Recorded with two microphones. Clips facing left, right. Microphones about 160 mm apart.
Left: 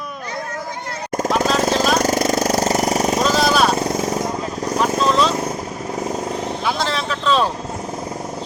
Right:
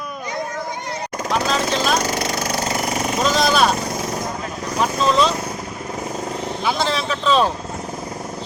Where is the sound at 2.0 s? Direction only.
45° left (ahead or behind).